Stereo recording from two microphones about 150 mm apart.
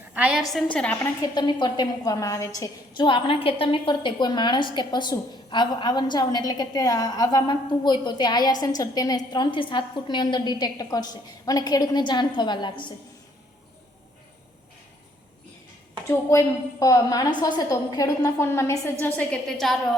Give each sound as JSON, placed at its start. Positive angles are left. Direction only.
{"t": 0.1, "sound": "a woman's voice", "side_deg": -5}
{"t": 0.5, "sound": "a woman's voice", "side_deg": 5}
{"t": 1.4, "sound": "a woman's voice", "side_deg": 30}
{"t": 16.8, "sound": "a woman's voice", "side_deg": 25}